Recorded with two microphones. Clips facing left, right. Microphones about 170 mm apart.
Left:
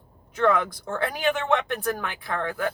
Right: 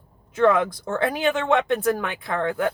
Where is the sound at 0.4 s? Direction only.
20° right (ahead or behind).